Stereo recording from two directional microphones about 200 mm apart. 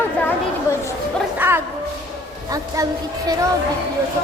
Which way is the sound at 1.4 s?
10° right (ahead or behind).